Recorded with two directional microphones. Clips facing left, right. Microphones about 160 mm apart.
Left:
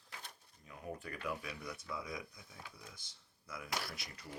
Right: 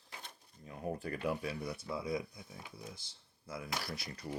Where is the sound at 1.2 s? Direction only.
30° right (ahead or behind).